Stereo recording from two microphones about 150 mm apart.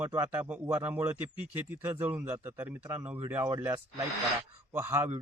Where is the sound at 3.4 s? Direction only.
20° right (ahead or behind).